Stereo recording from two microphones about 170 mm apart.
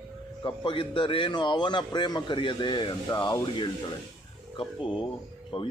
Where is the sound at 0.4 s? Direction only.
25° left (ahead or behind).